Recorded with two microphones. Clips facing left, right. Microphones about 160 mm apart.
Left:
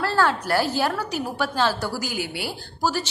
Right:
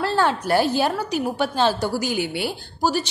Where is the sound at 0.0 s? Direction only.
20° right (ahead or behind).